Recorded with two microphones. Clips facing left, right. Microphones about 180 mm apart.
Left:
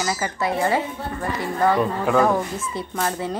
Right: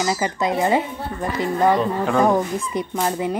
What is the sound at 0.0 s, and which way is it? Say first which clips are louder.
Speech: right 3 dB; 20° right (ahead or behind).